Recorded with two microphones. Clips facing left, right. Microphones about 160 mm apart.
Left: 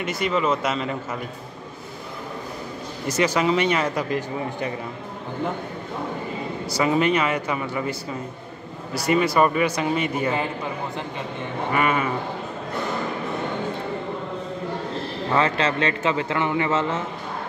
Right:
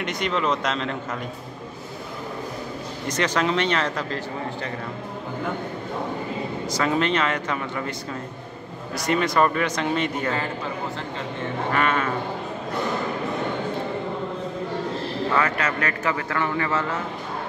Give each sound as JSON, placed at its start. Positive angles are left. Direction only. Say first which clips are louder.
{"t": 0.0, "sound": "speech", "louder": "left 2 dB", "side_deg": 5}
{"t": 3.1, "sound": "a man's voice", "louder": "left 3 dB", "side_deg": 10}
{"t": 6.7, "sound": "a man's voice", "louder": "left 3 dB", "side_deg": 10}
{"t": 11.7, "sound": "a man's voice", "louder": "left 2 dB", "side_deg": 10}
{"t": 15.3, "sound": "speech", "louder": "left 4 dB", "side_deg": 25}